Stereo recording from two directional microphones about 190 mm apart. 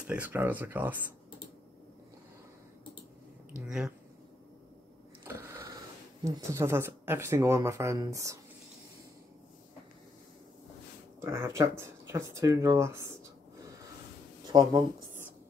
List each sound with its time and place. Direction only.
0.0 s speech: 5° right (ahead or behind)
3.6 s speech: 5° right (ahead or behind)
5.2 s a sound: 15° right (ahead or behind)
6.2 s speech: 15° right (ahead or behind)
11.1 s speech: 15° right (ahead or behind)